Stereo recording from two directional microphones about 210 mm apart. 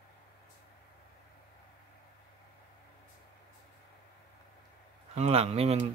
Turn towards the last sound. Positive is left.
turn(degrees=-30)  # may be behind; listen again after turning